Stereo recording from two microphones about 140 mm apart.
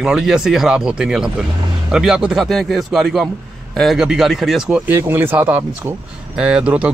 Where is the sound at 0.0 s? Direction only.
5° right (ahead or behind).